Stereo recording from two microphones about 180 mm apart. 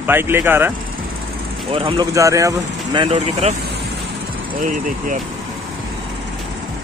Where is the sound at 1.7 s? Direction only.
30° right (ahead or behind).